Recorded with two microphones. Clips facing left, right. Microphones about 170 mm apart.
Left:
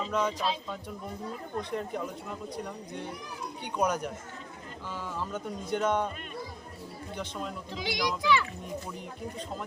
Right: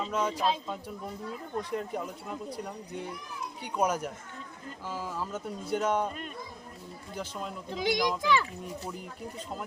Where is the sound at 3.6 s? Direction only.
5° right (ahead or behind).